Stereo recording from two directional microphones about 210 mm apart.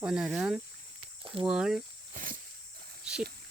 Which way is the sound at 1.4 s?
5° right (ahead or behind).